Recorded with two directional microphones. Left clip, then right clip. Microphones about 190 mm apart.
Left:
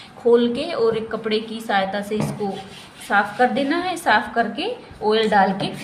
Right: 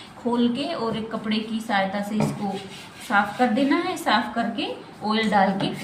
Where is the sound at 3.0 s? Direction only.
50° left (ahead or behind).